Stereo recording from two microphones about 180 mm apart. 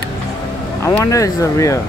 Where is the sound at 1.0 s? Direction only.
20° left (ahead or behind).